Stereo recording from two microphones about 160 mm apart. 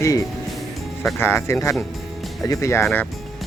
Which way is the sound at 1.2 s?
15° left (ahead or behind).